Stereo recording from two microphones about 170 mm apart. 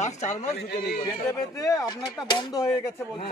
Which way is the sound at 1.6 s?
20° left (ahead or behind).